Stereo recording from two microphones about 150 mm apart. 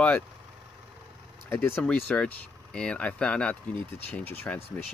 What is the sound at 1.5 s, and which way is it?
Speech, 15° left (ahead or behind).